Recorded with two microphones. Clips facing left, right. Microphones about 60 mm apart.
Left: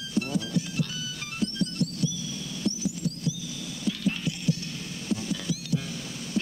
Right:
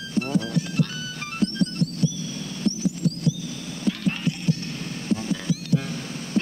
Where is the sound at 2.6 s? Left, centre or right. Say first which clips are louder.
Right 6 dB; right.